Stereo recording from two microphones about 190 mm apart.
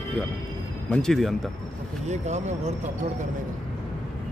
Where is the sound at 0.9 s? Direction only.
5° left (ahead or behind).